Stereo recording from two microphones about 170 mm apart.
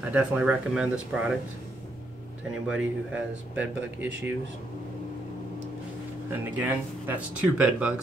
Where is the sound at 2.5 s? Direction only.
5° right (ahead or behind).